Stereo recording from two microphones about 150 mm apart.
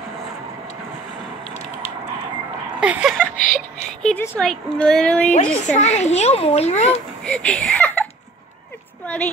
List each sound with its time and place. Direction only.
2.8 s a sound: 5° right (ahead or behind)
3.3 s speech: 60° left (ahead or behind)
4.4 s a woman's voice: 5° left (ahead or behind)
5.3 s a woman's voice: 55° left (ahead or behind)
6.9 s speech: 5° left (ahead or behind)
9.0 s a sound: 5° left (ahead or behind)